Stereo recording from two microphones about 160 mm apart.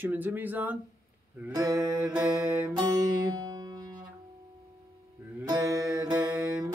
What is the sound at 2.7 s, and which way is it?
Music, 20° right (ahead or behind).